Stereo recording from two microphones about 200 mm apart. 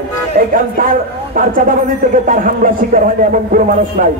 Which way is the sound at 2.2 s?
45° right (ahead or behind).